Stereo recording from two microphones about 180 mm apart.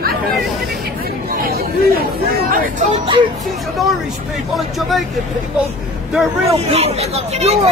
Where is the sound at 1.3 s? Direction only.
55° right (ahead or behind).